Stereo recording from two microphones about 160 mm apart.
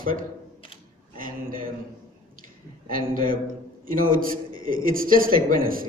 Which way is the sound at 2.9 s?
60° right (ahead or behind).